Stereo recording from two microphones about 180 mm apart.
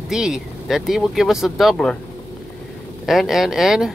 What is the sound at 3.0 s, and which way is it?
Speech, centre (ahead or behind).